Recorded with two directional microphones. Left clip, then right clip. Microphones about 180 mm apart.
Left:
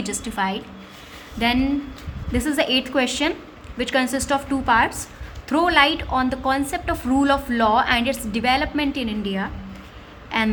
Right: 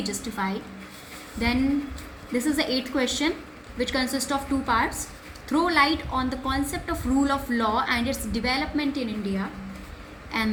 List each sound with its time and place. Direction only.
0.0 s a woman's voice: 45° left (ahead or behind)
2.3 s a woman's voice: 50° left (ahead or behind)